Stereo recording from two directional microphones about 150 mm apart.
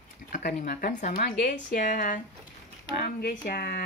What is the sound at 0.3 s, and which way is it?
Speech, 75° left (ahead or behind).